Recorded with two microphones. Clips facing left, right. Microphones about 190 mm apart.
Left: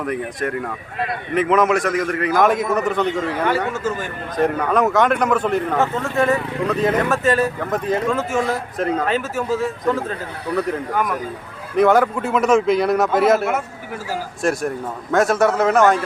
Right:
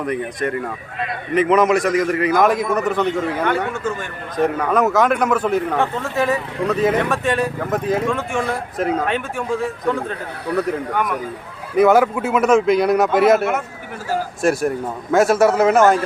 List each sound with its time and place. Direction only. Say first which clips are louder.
0.0 s speech: right 1 dB; centre (ahead or behind)
11.8 s speech: right 1 dB; 5° right (ahead or behind)